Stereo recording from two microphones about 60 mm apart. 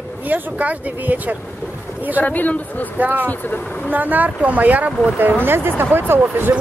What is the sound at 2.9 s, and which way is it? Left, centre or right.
Speech, right.